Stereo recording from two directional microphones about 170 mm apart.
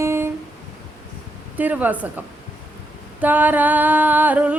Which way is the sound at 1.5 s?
10° right (ahead or behind).